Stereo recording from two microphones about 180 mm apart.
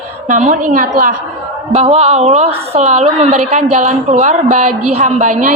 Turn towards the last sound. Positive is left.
turn(degrees=-45)  # may be behind; listen again after turning